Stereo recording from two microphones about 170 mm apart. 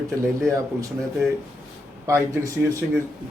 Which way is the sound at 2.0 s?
15° right (ahead or behind).